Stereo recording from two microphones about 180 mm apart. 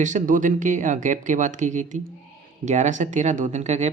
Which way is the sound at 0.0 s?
45° right (ahead or behind).